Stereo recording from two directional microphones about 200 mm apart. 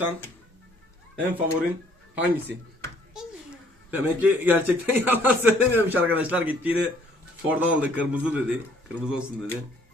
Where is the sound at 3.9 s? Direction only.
10° right (ahead or behind).